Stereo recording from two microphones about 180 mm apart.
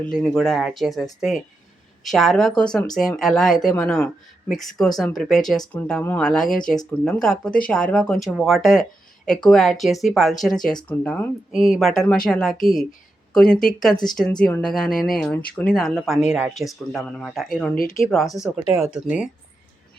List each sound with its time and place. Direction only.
0.2 s speech: centre (ahead or behind)
17.7 s speech: 55° left (ahead or behind)
18.5 s speech: centre (ahead or behind)